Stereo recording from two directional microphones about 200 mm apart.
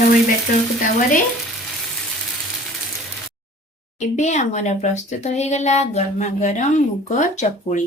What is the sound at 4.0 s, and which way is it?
Speech, 35° left (ahead or behind).